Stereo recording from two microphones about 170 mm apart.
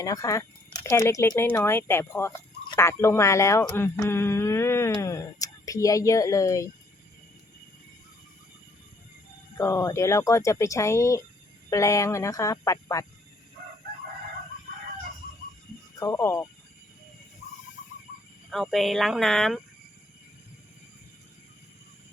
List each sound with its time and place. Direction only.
0.0 s speech: 20° left (ahead or behind)
9.6 s speech: 15° left (ahead or behind)
16.0 s speech: 20° left (ahead or behind)
18.5 s speech: centre (ahead or behind)